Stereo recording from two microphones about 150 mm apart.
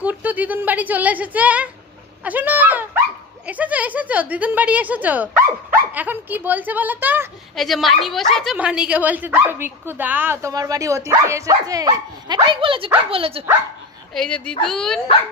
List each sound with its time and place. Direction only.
0.0 s a woman's voice: 10° right (ahead or behind)
7.5 s a woman's voice: centre (ahead or behind); by 13.4 s 40° right (ahead or behind)
14.1 s a woman's voice: 5° left (ahead or behind)